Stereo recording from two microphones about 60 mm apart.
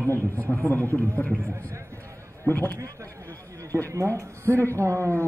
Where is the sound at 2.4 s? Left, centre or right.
Left.